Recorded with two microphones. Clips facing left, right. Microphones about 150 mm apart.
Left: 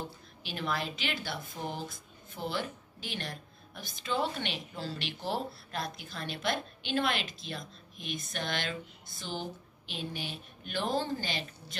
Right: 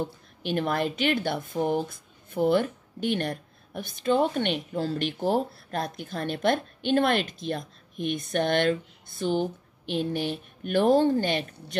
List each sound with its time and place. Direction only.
0.0 s a woman's voice: 50° right (ahead or behind)